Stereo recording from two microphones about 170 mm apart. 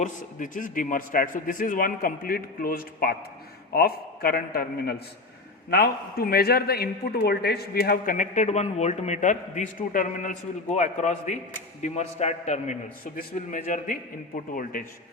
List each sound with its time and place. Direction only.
0.0 s a man's voice: 50° left (ahead or behind)